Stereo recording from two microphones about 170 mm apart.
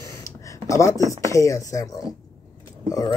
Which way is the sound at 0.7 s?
20° left (ahead or behind).